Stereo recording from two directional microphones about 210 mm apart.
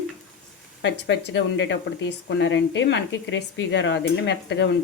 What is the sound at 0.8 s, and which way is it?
Speech, 55° left (ahead or behind).